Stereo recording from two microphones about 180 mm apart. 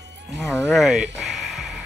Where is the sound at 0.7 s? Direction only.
Centre (ahead or behind).